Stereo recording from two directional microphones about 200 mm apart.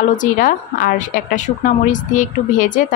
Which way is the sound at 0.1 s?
40° left (ahead or behind).